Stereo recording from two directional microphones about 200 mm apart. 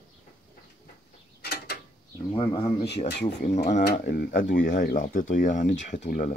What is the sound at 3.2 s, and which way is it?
Speech, 35° left (ahead or behind).